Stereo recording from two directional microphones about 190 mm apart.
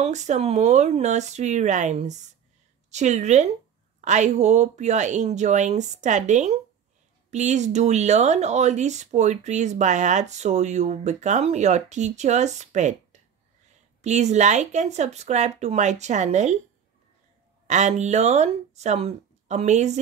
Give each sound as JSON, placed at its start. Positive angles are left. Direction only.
{"t": 0.0, "sound": "speech", "side_deg": -40}
{"t": 14.0, "sound": "speech", "side_deg": -35}
{"t": 17.6, "sound": "speech", "side_deg": -40}